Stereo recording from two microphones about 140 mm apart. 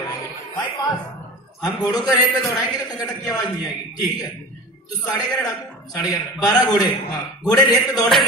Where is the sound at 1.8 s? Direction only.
25° left (ahead or behind).